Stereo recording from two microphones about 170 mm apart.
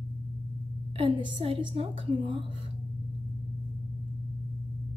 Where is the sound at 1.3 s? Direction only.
30° right (ahead or behind).